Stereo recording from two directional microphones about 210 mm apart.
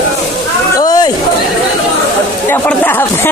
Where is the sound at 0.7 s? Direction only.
20° left (ahead or behind).